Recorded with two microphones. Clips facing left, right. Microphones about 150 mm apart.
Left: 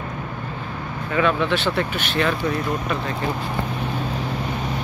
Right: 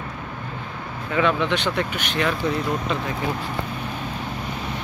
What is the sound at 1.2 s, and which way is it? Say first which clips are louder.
Speech: left 1 dB; 15° right (ahead or behind).